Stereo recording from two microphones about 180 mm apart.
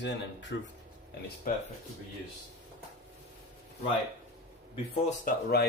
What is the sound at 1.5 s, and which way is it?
Speech, 50° left (ahead or behind).